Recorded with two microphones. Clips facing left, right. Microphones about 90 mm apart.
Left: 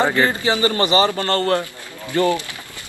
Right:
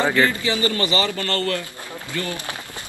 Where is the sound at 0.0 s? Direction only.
20° left (ahead or behind).